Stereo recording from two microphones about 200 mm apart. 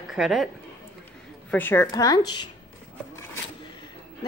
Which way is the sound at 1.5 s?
10° left (ahead or behind).